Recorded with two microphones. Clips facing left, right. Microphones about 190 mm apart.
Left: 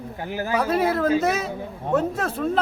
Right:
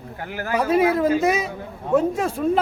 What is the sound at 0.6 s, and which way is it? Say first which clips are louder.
Speech: right 4 dB; 10° right (ahead or behind).